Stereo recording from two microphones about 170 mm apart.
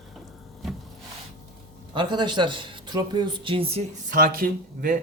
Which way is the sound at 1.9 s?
25° right (ahead or behind).